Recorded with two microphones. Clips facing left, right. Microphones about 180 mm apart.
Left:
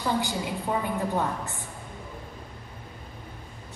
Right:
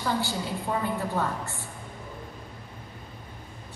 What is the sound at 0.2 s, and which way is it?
A woman's voice, 15° left (ahead or behind).